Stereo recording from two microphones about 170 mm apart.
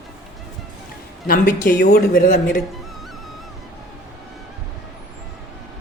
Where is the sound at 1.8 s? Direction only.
70° left (ahead or behind).